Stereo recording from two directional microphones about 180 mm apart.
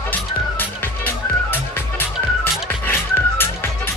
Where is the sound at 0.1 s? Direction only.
10° left (ahead or behind).